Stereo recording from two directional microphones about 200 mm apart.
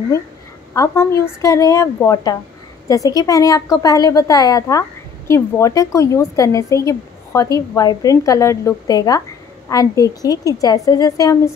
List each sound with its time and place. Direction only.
0.7 s speech: 15° left (ahead or behind)